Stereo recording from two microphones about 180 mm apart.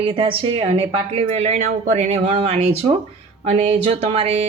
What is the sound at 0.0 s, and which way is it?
Speech, 30° right (ahead or behind).